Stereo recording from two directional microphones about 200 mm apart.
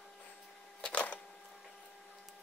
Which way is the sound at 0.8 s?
5° left (ahead or behind).